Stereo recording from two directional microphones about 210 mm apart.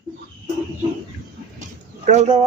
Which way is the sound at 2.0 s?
35° right (ahead or behind).